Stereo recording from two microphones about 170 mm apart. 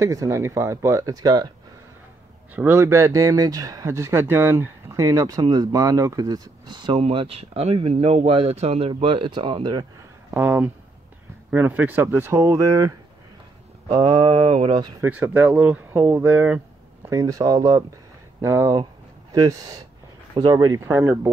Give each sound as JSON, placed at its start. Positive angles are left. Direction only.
{"t": 0.0, "sound": "speech", "side_deg": -15}
{"t": 2.5, "sound": "speech", "side_deg": -15}
{"t": 10.3, "sound": "speech", "side_deg": -10}
{"t": 15.0, "sound": "speech", "side_deg": -10}